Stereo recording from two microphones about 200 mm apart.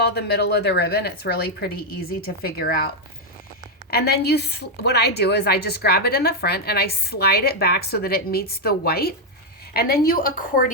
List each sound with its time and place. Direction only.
0.0 s a woman's voice: 55° left (ahead or behind)
3.9 s a woman's voice: 50° left (ahead or behind)